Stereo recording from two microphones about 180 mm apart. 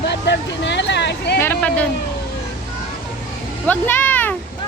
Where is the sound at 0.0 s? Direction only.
70° left (ahead or behind).